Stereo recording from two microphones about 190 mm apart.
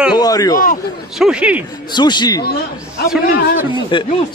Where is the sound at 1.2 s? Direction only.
5° right (ahead or behind).